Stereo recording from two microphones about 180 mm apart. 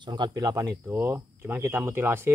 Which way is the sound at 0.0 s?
25° right (ahead or behind).